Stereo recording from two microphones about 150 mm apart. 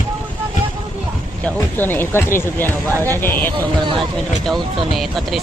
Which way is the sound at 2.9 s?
20° right (ahead or behind).